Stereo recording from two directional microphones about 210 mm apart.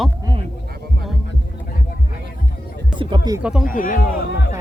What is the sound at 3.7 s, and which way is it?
Speech, 40° left (ahead or behind).